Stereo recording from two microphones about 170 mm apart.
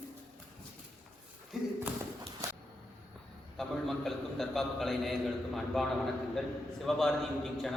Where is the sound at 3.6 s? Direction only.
Centre (ahead or behind).